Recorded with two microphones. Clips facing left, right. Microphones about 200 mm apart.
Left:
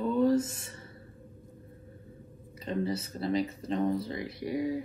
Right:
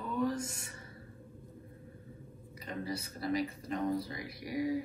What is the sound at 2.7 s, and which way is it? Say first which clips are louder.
Speech: left 7 dB; 25° left (ahead or behind).